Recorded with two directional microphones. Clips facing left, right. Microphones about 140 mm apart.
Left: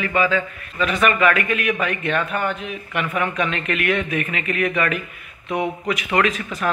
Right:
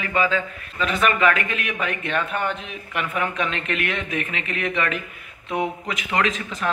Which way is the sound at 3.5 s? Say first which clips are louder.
Left 4 dB; 30° right (ahead or behind).